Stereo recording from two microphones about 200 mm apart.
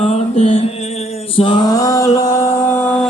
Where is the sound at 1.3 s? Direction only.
25° left (ahead or behind).